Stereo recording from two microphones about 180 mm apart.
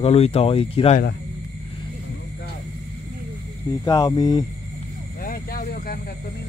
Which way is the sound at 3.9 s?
20° left (ahead or behind).